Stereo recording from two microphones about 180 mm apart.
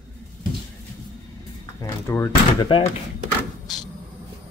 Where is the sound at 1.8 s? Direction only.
15° left (ahead or behind).